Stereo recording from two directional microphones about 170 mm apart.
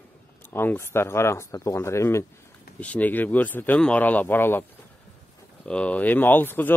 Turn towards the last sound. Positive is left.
turn(degrees=10)  # may be behind; listen again after turning